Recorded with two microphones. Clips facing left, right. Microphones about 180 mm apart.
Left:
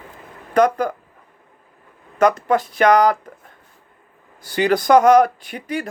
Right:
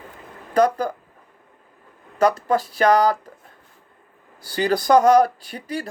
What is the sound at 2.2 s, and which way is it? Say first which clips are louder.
Speech: left 2 dB; 30° right (ahead or behind).